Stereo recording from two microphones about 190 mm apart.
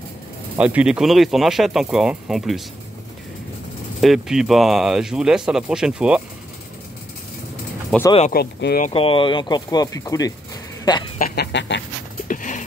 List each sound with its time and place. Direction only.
0.6 s speech: 5° right (ahead or behind)
4.0 s speech: centre (ahead or behind)
7.9 s speech: 5° left (ahead or behind)
8.3 s speech: 55° left (ahead or behind)
8.9 s speech: 30° left (ahead or behind)
11.1 s speech: 65° left (ahead or behind)
12.3 s a sound: 45° left (ahead or behind)